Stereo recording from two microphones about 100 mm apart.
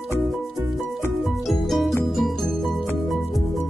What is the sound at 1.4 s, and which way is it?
Music, centre (ahead or behind).